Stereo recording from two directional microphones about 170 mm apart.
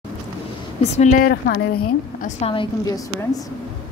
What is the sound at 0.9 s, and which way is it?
Speech, 40° left (ahead or behind).